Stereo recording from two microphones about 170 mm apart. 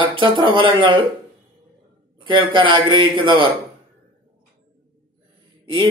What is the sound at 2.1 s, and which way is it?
A man's voice, 30° right (ahead or behind).